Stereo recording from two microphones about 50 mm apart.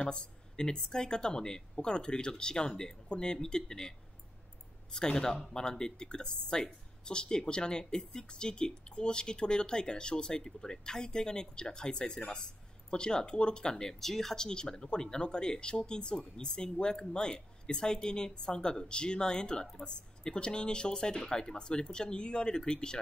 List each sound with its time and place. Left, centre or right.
0.0 s speech: centre
4.9 s speech: centre